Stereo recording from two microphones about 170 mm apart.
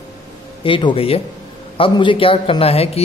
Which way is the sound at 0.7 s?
30° left (ahead or behind).